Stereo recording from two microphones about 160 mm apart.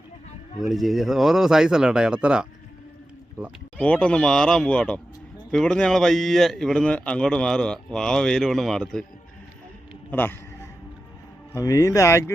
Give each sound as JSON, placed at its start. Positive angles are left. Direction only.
{"t": 0.6, "sound": "a man's voice", "side_deg": 0}
{"t": 10.1, "sound": "speech", "side_deg": 10}
{"t": 11.5, "sound": "speech", "side_deg": 20}